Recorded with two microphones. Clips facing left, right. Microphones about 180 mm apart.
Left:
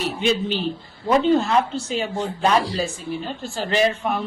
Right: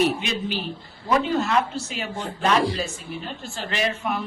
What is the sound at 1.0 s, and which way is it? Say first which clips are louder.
Speech: left 5 dB; 30° left (ahead or behind).